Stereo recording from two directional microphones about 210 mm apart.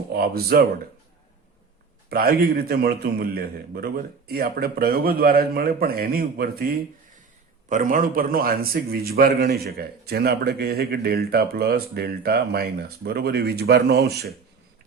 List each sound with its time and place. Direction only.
0.1 s a man's voice: 45° right (ahead or behind)
2.0 s a man's voice: 45° right (ahead or behind)